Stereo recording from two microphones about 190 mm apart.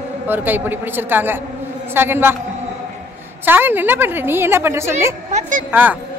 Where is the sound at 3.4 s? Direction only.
10° right (ahead or behind).